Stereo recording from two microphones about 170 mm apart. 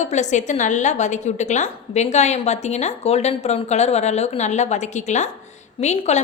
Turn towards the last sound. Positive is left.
turn(degrees=40)  # may be behind; listen again after turning